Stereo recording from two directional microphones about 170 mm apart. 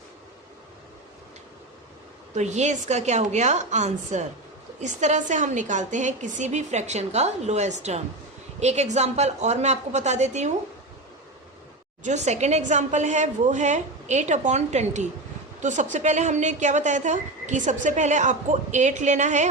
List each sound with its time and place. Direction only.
2.3 s speech: 45° right (ahead or behind)
12.0 s speech: 45° right (ahead or behind)